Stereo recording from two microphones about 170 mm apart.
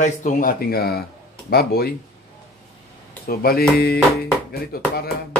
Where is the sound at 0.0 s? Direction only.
50° left (ahead or behind); by 1.9 s 65° left (ahead or behind).